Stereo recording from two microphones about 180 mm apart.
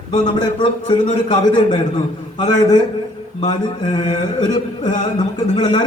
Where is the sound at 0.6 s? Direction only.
25° left (ahead or behind).